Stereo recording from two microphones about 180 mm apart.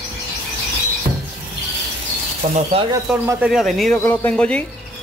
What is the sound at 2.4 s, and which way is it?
Speech, 35° right (ahead or behind).